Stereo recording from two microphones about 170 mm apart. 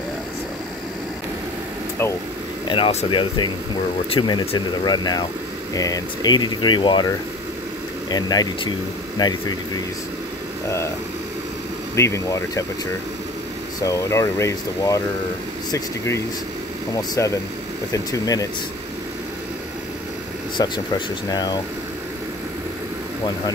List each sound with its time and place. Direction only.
2.7 s speech: 35° left (ahead or behind)
8.1 s speech: 25° left (ahead or behind)
11.9 s speech: 15° left (ahead or behind)
13.7 s speech: 20° left (ahead or behind)
16.9 s speech: 20° left (ahead or behind)
20.5 s speech: 25° left (ahead or behind)